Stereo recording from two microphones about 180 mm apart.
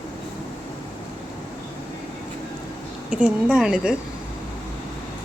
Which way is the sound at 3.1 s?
5° right (ahead or behind).